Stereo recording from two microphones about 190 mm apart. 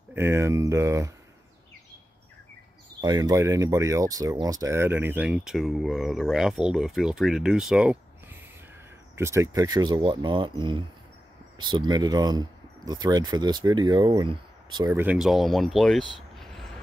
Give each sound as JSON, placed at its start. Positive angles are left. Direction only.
{"t": 0.1, "sound": "speech", "side_deg": -10}
{"t": 3.0, "sound": "speech", "side_deg": -20}
{"t": 11.6, "sound": "speech", "side_deg": -20}
{"t": 14.9, "sound": "speech", "side_deg": -10}